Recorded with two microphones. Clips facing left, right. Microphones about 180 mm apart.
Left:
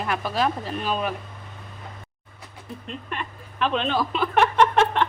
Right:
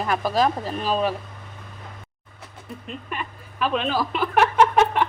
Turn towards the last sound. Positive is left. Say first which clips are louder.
# right 1 dB
turn(degrees=-5)  # may be behind; listen again after turning